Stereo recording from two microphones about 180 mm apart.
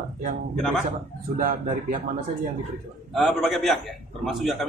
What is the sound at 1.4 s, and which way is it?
Speech, 50° right (ahead or behind).